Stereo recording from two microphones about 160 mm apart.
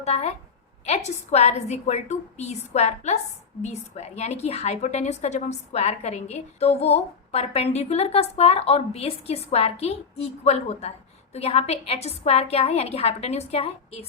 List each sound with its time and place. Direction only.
0.0 s a woman's voice: 40° left (ahead or behind)